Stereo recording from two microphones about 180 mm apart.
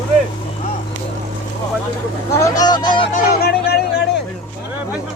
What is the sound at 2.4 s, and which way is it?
Speech, 20° left (ahead or behind).